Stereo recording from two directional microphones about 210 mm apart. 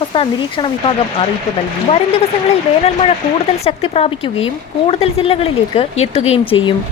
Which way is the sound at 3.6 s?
30° left (ahead or behind).